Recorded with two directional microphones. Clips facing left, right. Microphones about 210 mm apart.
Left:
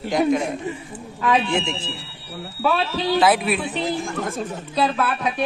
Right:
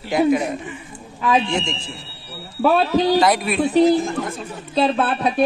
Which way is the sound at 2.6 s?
45° right (ahead or behind).